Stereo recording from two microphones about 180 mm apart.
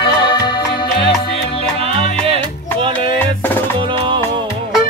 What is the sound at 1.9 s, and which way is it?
Music, 30° right (ahead or behind).